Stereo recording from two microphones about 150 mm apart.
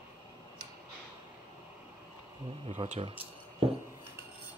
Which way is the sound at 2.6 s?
55° right (ahead or behind).